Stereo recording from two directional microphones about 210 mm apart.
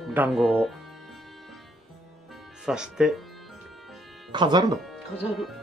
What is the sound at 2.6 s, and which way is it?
Speech, 5° right (ahead or behind).